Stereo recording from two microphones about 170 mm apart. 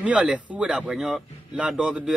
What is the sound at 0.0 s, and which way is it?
Speech, 5° right (ahead or behind).